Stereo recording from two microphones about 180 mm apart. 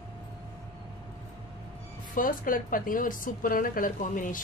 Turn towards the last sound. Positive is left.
turn(degrees=45)  # may be behind; listen again after turning